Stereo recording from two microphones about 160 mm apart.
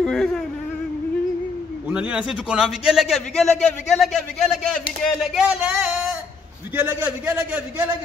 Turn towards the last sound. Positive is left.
turn(degrees=-10)  # may be behind; listen again after turning